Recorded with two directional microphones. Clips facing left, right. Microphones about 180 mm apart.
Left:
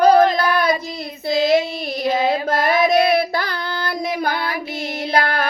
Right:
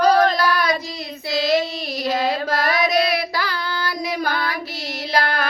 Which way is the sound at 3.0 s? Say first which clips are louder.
Left 5 dB; 50° left (ahead or behind).